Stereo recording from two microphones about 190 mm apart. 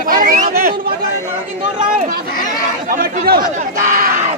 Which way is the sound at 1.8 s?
45° right (ahead or behind).